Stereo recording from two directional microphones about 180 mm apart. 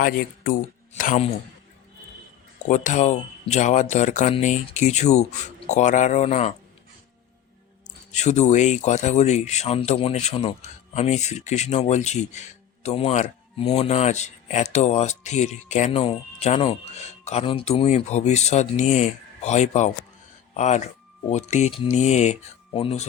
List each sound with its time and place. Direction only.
0.0 s speech: 50° left (ahead or behind)
2.6 s speech: 40° left (ahead or behind)
8.1 s speech: 40° left (ahead or behind)